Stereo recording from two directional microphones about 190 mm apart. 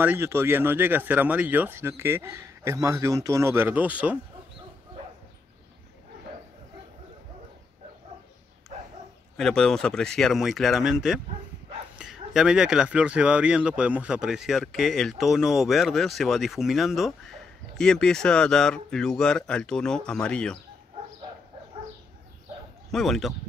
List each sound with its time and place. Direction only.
0.0 s speech: 10° right (ahead or behind)
9.4 s speech: 5° left (ahead or behind)
22.8 s speech: centre (ahead or behind)